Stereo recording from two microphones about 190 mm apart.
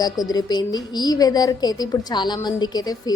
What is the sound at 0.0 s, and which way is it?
A woman's voice, 20° left (ahead or behind).